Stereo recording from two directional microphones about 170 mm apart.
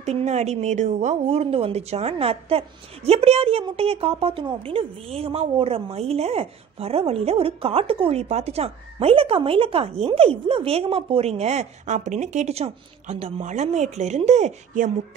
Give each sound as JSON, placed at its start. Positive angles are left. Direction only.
{"t": 0.0, "sound": "a woman's voice", "side_deg": -40}